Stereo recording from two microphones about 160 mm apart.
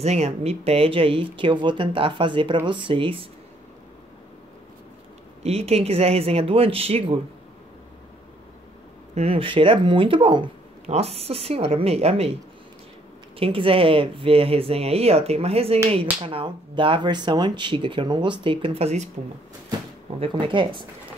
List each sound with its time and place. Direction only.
0.0 s speech: 40° right (ahead or behind)
5.4 s speech: 40° right (ahead or behind)
9.1 s speech: 40° right (ahead or behind)
13.4 s speech: 35° right (ahead or behind)
20.2 s speech: 30° right (ahead or behind)